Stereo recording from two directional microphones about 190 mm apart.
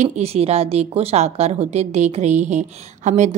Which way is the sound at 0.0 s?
35° right (ahead or behind).